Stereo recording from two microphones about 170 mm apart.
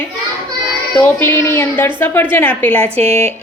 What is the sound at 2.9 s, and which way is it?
Speech, 35° right (ahead or behind).